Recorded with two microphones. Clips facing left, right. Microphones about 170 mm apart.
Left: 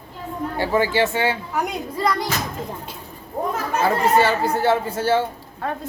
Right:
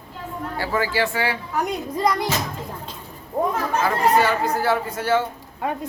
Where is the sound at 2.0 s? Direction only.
20° right (ahead or behind).